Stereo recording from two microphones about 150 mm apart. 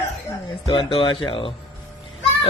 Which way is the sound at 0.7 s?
35° left (ahead or behind).